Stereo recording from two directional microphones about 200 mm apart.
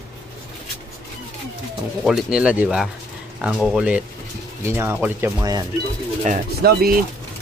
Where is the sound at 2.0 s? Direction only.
5° right (ahead or behind).